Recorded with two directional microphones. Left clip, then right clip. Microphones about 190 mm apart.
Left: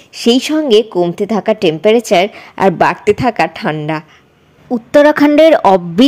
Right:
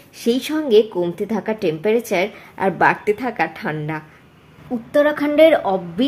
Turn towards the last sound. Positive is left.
turn(degrees=55)  # may be behind; listen again after turning